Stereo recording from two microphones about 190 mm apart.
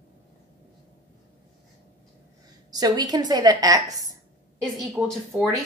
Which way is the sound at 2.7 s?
20° right (ahead or behind).